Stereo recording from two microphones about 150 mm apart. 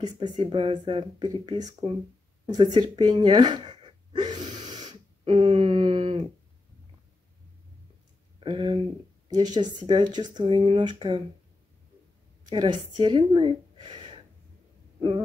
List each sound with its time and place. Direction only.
0.0 s speech: 30° right (ahead or behind)
2.4 s gasp: 30° right (ahead or behind)
5.3 s a sound: 40° right (ahead or behind)
8.4 s speech: 35° right (ahead or behind)
12.4 s speech: 30° right (ahead or behind)
15.0 s owl: 30° right (ahead or behind)